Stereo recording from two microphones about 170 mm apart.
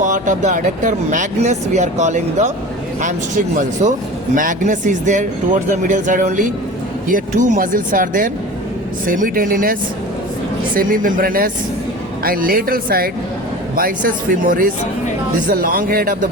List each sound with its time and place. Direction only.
0.0 s speech: 45° right (ahead or behind)
10.8 s speech: 55° right (ahead or behind)